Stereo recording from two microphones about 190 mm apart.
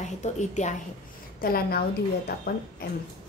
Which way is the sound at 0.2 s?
40° left (ahead or behind).